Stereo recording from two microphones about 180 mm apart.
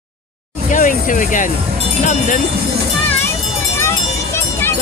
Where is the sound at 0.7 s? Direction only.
45° left (ahead or behind).